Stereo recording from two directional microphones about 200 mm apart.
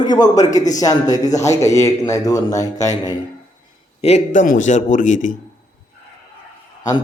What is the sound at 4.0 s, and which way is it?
A man's voice, 35° left (ahead or behind).